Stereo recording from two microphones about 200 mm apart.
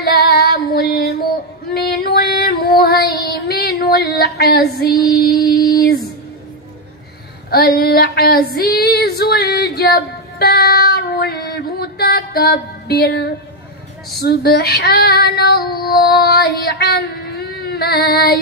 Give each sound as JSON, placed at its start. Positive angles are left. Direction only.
{"t": 0.0, "sound": "female singing", "side_deg": 50}
{"t": 5.1, "sound": "music", "side_deg": 50}
{"t": 7.5, "sound": "female singing", "side_deg": 50}